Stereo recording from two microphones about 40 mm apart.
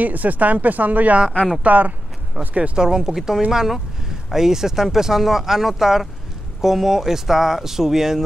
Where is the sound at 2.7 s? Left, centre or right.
Centre.